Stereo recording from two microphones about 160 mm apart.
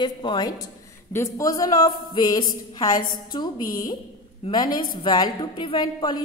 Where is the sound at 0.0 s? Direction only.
30° left (ahead or behind).